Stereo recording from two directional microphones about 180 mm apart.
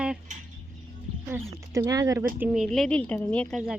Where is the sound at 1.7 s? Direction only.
20° right (ahead or behind).